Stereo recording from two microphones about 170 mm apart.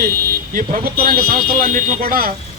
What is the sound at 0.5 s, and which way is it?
A man's voice, 55° right (ahead or behind).